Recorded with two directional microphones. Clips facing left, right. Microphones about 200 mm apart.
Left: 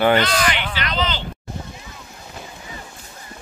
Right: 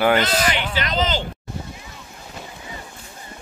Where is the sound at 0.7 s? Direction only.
45° right (ahead or behind).